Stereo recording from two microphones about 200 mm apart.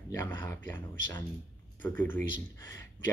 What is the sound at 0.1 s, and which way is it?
Speech, 10° left (ahead or behind).